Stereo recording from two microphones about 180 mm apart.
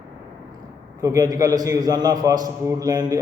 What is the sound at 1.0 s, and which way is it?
A man's voice, 20° right (ahead or behind).